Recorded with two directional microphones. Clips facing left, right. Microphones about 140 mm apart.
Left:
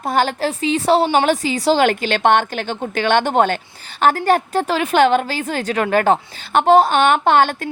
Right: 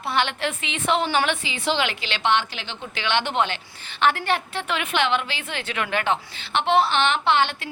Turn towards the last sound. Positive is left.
turn(degrees=45)  # may be behind; listen again after turning